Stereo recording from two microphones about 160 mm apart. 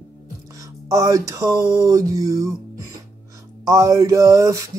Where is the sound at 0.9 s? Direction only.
20° right (ahead or behind).